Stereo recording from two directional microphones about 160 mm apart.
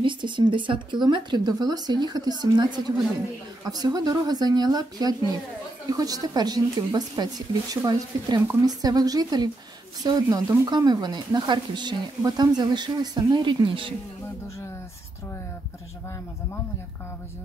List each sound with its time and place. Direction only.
0.0 s speech: 30° right (ahead or behind)